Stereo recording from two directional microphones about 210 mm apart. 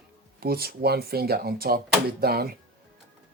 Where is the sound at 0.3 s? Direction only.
45° right (ahead or behind).